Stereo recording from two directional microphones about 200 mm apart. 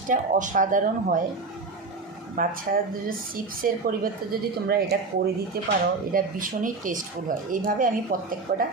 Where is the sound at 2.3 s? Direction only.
45° right (ahead or behind).